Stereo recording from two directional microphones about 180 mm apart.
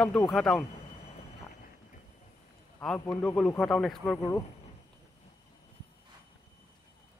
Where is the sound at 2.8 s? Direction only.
5° left (ahead or behind).